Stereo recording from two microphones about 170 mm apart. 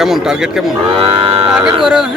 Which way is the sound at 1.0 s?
35° right (ahead or behind).